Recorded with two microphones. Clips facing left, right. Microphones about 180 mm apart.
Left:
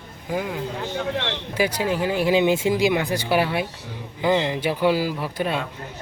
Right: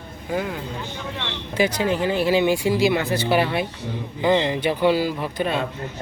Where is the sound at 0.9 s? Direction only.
65° left (ahead or behind).